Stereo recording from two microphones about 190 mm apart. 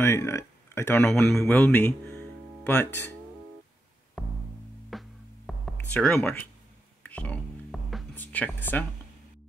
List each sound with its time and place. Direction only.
0.0 s speech: 15° left (ahead or behind)
4.2 s music: centre (ahead or behind)
5.8 s speech: 5° left (ahead or behind)
7.0 s music: 5° left (ahead or behind)